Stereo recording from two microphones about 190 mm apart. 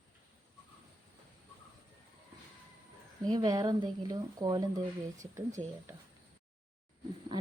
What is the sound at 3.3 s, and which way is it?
Speech, 20° right (ahead or behind).